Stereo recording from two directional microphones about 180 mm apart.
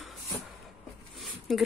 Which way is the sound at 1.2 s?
Centre (ahead or behind).